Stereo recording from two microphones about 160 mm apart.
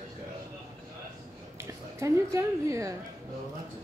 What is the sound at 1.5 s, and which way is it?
A woman's voice, 20° right (ahead or behind).